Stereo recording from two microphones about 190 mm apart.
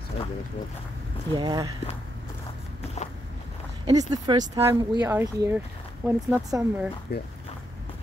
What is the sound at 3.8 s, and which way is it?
Speech, 20° right (ahead or behind).